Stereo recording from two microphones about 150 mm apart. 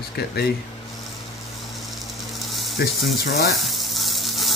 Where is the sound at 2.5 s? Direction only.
Centre (ahead or behind).